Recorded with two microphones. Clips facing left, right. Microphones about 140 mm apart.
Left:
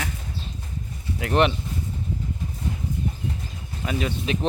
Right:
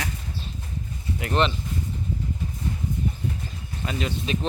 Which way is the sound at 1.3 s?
15° left (ahead or behind).